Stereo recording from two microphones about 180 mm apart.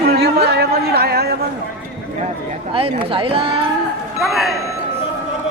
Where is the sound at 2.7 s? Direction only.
30° right (ahead or behind).